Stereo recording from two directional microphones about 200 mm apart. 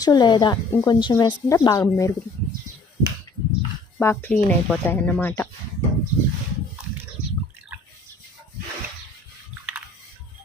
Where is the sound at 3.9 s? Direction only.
10° left (ahead or behind).